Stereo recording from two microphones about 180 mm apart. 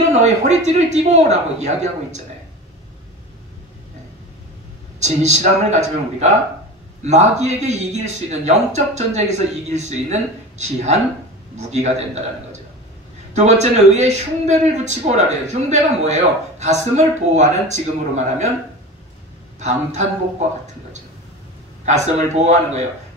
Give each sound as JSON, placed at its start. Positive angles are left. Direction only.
{"t": 0.1, "sound": "speech", "side_deg": -40}
{"t": 5.0, "sound": "speech", "side_deg": -40}
{"t": 13.3, "sound": "speech", "side_deg": -40}
{"t": 19.6, "sound": "speech", "side_deg": -40}
{"t": 21.8, "sound": "speech", "side_deg": -40}